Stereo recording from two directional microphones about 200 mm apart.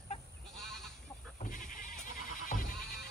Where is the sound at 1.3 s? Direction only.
45° left (ahead or behind).